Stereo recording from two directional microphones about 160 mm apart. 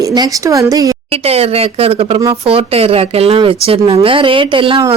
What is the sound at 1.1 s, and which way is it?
Speech, 40° right (ahead or behind).